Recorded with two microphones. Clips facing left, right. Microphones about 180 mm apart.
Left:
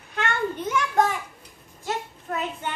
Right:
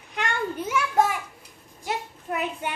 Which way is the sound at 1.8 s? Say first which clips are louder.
Left 1 dB; 15° right (ahead or behind).